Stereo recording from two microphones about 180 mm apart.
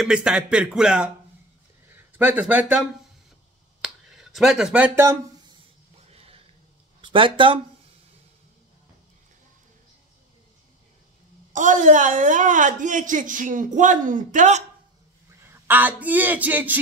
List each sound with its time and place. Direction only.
0.0 s speech: 5° right (ahead or behind)
2.1 s speech: 10° right (ahead or behind)
3.8 s speech: centre (ahead or behind)
6.1 s a sound: 35° right (ahead or behind)
7.0 s speech: 25° right (ahead or behind)
11.5 s a woman's voice: 45° right (ahead or behind)
15.6 s speech: 10° right (ahead or behind)